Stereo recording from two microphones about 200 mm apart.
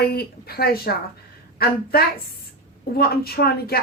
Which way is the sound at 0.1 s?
50° left (ahead or behind).